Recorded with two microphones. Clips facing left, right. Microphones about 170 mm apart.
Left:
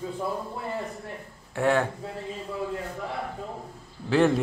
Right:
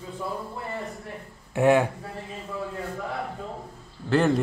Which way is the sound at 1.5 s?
15° right (ahead or behind).